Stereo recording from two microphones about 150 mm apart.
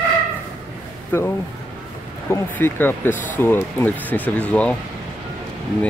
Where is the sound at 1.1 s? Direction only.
15° left (ahead or behind).